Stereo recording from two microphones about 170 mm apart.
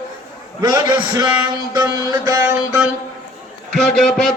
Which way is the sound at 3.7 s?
5° left (ahead or behind).